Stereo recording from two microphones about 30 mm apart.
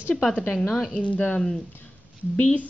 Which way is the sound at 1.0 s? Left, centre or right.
Left.